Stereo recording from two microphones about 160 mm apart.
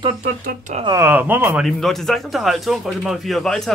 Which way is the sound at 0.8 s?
15° right (ahead or behind).